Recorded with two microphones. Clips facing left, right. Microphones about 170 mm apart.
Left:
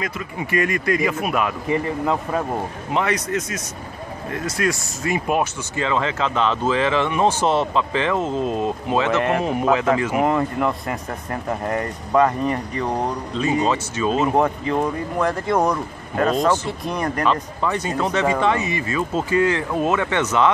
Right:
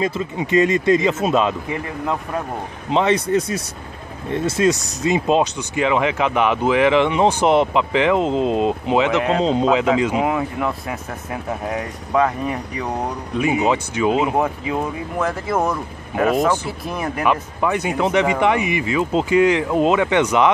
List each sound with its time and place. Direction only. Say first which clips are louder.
0.0 s speech: right 6 dB; 25° right (ahead or behind)
1.7 s speech: left 3 dB; centre (ahead or behind)
2.9 s speech: right 5 dB; 25° right (ahead or behind)
10.2 s speech: left 1 dB; 5° right (ahead or behind)